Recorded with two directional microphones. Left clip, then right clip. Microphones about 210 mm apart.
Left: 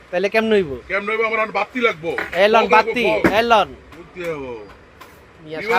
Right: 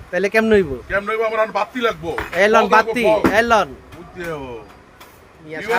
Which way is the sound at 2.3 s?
15° right (ahead or behind).